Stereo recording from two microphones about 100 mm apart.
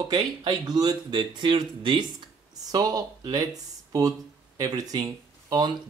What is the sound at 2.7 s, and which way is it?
Speech, 35° right (ahead or behind).